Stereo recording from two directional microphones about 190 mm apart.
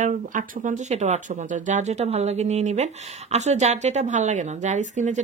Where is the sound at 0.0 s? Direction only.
40° right (ahead or behind).